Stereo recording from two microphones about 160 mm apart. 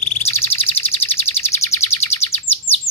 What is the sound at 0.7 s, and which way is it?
Bird, 40° left (ahead or behind).